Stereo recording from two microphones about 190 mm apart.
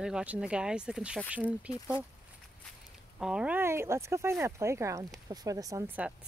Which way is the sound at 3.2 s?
5° right (ahead or behind).